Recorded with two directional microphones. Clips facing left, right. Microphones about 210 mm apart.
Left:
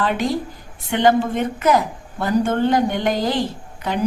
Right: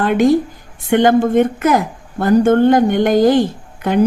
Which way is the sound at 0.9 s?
50° right (ahead or behind).